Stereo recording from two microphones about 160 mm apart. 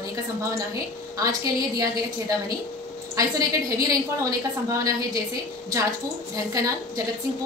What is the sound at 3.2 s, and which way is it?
A woman's voice, 20° right (ahead or behind).